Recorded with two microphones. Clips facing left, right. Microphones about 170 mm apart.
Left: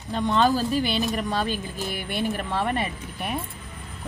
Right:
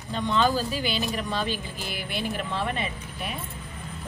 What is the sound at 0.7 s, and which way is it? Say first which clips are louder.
Speech: left 4 dB; 50° left (ahead or behind).